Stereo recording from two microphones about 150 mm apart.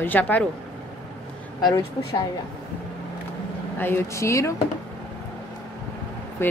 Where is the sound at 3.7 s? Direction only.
15° left (ahead or behind).